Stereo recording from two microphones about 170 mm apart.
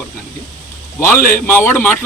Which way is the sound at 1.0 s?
15° left (ahead or behind).